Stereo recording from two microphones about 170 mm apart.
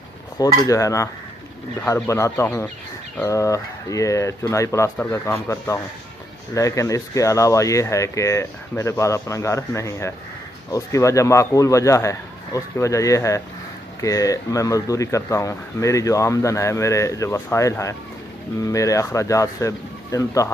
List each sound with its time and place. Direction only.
0.4 s speech: 20° left (ahead or behind)